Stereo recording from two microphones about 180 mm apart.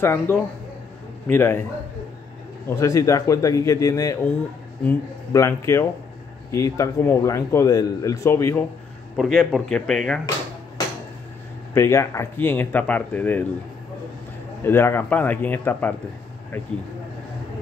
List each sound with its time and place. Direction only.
0.0 s a man's voice: 15° left (ahead or behind)
2.8 s a man's voice: 15° left (ahead or behind)
9.1 s speech: centre (ahead or behind)
11.7 s a man's voice: 15° left (ahead or behind)
14.6 s a man's voice: 15° left (ahead or behind)